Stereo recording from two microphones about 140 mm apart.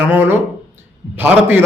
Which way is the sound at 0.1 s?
15° right (ahead or behind).